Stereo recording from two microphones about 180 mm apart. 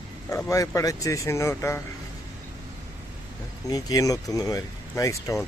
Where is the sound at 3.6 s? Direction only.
20° left (ahead or behind).